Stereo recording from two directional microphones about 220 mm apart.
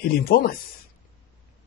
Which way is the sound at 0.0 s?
45° left (ahead or behind).